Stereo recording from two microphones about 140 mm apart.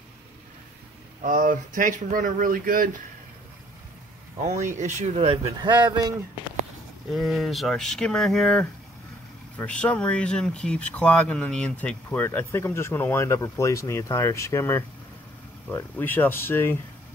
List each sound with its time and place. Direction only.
1.2 s speech: 70° right (ahead or behind); by 2.9 s 90° right
4.4 s speech: 55° right (ahead or behind)
5.4 s speech: 30° right (ahead or behind)
7.1 s speech: centre (ahead or behind); by 16.7 s 15° left (ahead or behind)